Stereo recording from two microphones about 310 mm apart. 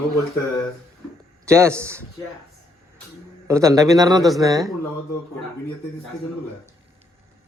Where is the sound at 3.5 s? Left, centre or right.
Centre.